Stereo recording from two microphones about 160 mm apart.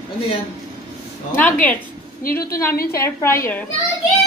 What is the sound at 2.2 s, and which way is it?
Speech, 70° left (ahead or behind).